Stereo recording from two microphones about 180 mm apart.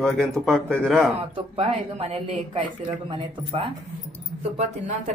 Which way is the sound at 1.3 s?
35° right (ahead or behind).